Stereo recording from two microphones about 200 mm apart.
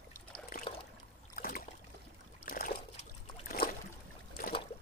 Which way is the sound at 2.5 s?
45° left (ahead or behind).